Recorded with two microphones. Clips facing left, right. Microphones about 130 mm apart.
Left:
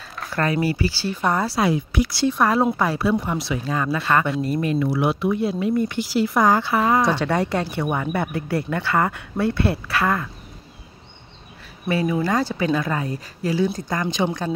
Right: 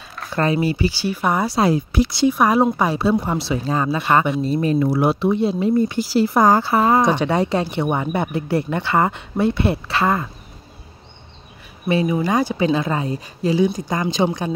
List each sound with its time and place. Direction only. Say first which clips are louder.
0.3 s speech: right 3 dB; 25° right (ahead or behind)
1.6 s speech: right 5 dB; 35° right (ahead or behind)
2.0 s speech: right 3 dB; 15° right (ahead or behind)
4.7 s speech: right 3 dB; 40° right (ahead or behind)
5.3 s speech: right 3 dB; 25° right (ahead or behind)
7.0 s speech: right 3 dB; 20° right (ahead or behind)
11.9 s speech: right 2 dB; 20° right (ahead or behind)